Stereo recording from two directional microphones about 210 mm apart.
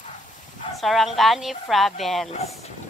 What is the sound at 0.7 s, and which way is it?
Speech, centre (ahead or behind).